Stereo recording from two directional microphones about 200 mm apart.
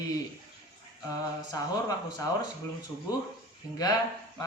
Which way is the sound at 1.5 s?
15° left (ahead or behind).